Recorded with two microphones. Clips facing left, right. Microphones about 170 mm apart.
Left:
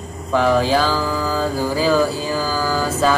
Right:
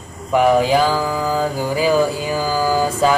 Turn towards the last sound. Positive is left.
turn(degrees=-15)  # may be behind; listen again after turning